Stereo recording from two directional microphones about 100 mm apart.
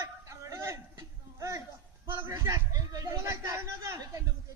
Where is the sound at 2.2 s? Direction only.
30° right (ahead or behind).